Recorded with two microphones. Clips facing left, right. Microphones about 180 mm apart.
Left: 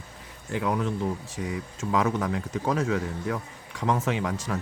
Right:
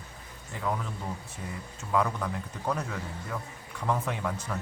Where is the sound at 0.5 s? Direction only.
85° left.